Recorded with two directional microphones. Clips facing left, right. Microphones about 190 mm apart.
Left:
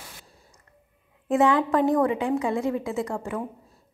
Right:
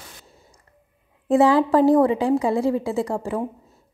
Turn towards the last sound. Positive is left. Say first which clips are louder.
# right 4 dB
turn(degrees=-30)  # may be behind; listen again after turning